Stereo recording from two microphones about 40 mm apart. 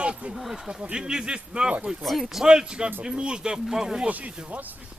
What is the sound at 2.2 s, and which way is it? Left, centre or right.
Speech, centre.